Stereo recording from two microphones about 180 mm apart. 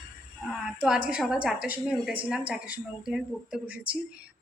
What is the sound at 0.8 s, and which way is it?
A woman's voice, 5° right (ahead or behind).